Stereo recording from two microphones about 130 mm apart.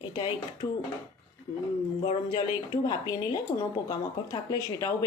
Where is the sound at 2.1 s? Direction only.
35° left (ahead or behind).